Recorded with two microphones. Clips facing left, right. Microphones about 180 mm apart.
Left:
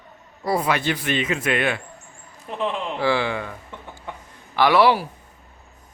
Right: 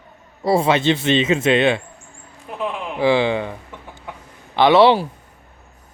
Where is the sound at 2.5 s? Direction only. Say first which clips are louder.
Even; 5° right (ahead or behind).